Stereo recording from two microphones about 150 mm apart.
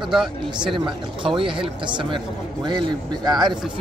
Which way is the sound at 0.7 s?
35° right (ahead or behind).